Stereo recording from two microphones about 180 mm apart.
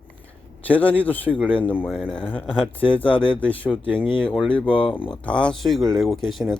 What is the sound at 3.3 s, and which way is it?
Speech, 5° left (ahead or behind).